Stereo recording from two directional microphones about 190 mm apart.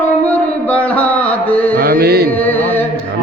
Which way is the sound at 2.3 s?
10° left (ahead or behind).